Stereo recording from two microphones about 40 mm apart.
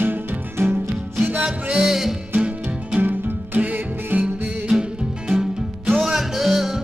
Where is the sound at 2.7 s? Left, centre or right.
Right.